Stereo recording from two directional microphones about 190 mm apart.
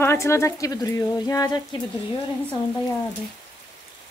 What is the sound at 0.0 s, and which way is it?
Speech, 15° left (ahead or behind).